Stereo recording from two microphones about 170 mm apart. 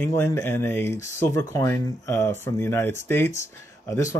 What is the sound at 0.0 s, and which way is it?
Speech, 15° left (ahead or behind).